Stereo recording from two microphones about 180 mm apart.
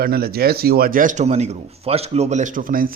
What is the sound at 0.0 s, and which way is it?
Speech, 60° right (ahead or behind).